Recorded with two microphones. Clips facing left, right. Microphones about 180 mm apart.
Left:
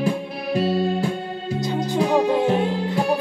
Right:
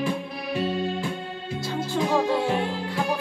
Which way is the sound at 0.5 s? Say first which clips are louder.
Left 6 dB; 40° left (ahead or behind).